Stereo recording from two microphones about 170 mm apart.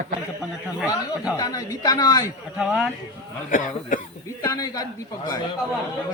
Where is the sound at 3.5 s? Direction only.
50° left (ahead or behind).